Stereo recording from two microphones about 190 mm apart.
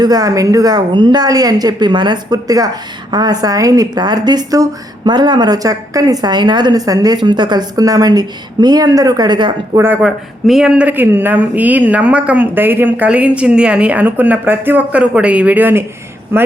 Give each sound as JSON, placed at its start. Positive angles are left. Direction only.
{"t": 0.0, "sound": "a woman's voice", "side_deg": -20}
{"t": 9.7, "sound": "speech", "side_deg": -10}